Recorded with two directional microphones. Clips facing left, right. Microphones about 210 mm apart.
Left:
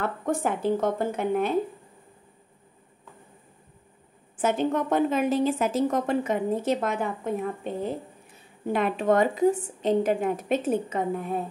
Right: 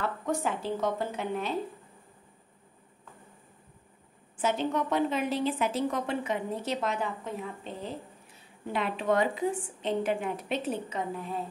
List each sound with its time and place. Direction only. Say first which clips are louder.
0.0 s a woman's voice: left 4 dB; 50° left (ahead or behind)
4.4 s a woman's voice: left 4 dB; 50° left (ahead or behind)